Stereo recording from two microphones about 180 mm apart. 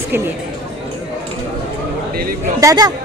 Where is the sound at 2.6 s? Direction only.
20° right (ahead or behind).